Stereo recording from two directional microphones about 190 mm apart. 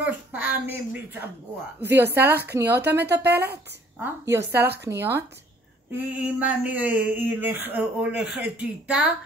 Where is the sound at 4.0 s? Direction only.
15° right (ahead or behind).